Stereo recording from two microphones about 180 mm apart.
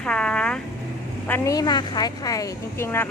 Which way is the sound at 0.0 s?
5° left (ahead or behind).